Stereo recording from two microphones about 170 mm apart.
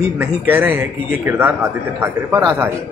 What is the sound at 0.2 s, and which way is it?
A man's voice, 10° right (ahead or behind).